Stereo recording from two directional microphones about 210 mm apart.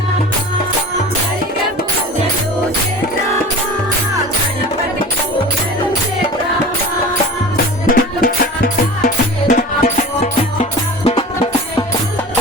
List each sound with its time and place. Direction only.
7.5 s music: 45° left (ahead or behind)